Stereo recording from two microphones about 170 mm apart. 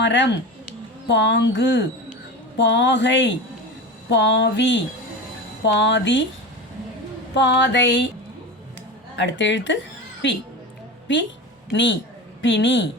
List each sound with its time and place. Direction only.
0.0 s speech: 90° left
7.3 s speech: 90° left
9.1 s speech: 90° left
11.7 s speech: 90° left